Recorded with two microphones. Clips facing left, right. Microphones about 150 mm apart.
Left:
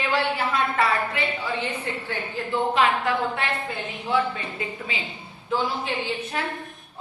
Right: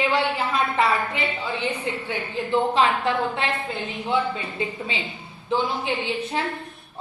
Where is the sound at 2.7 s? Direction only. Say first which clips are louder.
Right 1 dB; 30° right (ahead or behind).